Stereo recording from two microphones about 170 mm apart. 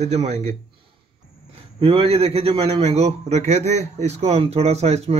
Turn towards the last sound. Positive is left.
turn(degrees=-40)  # may be behind; listen again after turning